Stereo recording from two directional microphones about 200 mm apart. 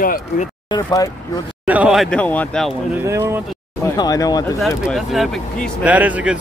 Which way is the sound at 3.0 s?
15° right (ahead or behind).